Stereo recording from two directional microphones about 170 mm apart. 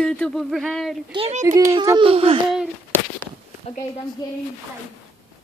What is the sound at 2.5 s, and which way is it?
Speech, 5° right (ahead or behind).